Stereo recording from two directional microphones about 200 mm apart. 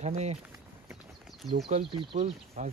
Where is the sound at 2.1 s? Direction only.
40° right (ahead or behind).